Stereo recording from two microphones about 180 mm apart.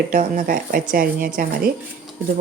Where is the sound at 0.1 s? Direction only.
50° right (ahead or behind).